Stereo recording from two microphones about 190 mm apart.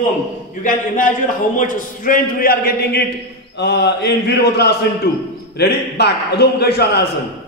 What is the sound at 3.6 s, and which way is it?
A man's voice, 60° left (ahead or behind).